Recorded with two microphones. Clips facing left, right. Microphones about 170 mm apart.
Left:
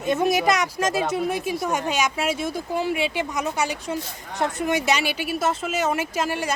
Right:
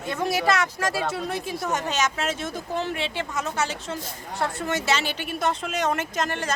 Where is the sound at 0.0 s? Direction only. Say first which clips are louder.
Left 4 dB; 20° left (ahead or behind).